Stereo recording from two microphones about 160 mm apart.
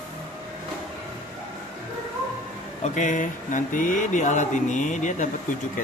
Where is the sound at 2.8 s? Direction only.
50° left (ahead or behind).